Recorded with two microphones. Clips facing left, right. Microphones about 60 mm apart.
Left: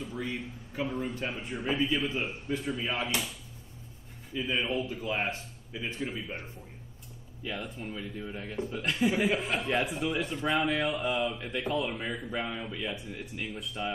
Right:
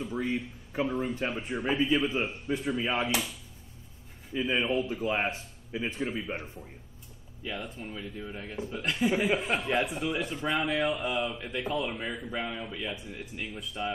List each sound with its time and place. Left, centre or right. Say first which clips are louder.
0.1 s a man's voice: right 4 dB; right
4.3 s a man's voice: right 3 dB; right
7.4 s a man's voice: even; centre